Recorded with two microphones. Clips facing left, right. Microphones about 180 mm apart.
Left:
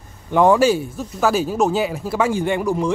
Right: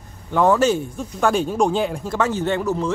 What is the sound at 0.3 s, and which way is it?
Speech, 15° left (ahead or behind).